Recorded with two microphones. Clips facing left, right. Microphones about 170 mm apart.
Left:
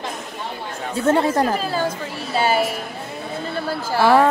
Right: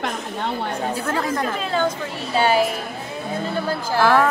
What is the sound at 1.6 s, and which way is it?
A woman's voice, 5° left (ahead or behind).